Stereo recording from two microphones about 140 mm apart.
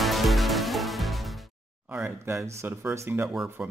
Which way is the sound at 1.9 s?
10° right (ahead or behind).